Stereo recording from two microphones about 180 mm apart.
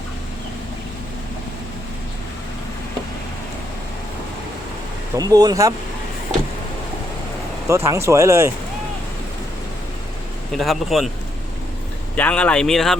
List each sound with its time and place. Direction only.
5.1 s speech: 20° right (ahead or behind)
7.9 s speech: 15° right (ahead or behind)
10.5 s speech: centre (ahead or behind)
12.1 s speech: 10° left (ahead or behind)